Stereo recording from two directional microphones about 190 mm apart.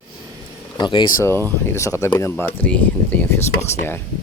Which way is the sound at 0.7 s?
25° left (ahead or behind).